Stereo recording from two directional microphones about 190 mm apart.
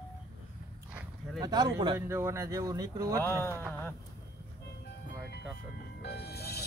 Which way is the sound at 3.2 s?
10° left (ahead or behind).